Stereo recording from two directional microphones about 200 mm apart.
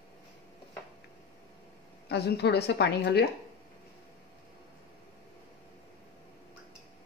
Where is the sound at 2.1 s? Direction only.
55° left (ahead or behind).